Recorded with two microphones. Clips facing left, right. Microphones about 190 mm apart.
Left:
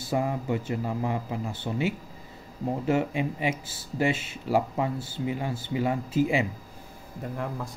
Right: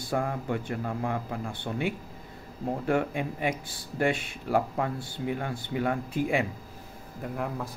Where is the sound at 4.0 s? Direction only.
55° right (ahead or behind).